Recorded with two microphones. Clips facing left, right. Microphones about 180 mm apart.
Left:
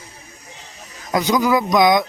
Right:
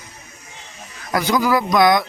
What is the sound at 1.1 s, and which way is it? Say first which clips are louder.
Speech: left 1 dB; 20° left (ahead or behind).